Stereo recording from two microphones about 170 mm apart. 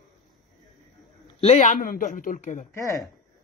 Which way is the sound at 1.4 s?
45° left (ahead or behind).